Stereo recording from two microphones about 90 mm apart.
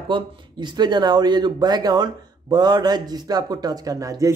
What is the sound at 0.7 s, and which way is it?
Speech, 55° right (ahead or behind).